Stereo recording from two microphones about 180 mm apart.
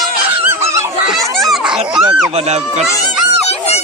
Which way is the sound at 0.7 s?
15° right (ahead or behind).